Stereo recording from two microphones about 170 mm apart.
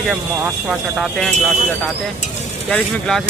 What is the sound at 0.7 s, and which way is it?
Speech, 5° right (ahead or behind).